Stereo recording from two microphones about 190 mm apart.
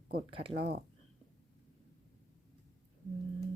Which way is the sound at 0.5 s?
55° right (ahead or behind).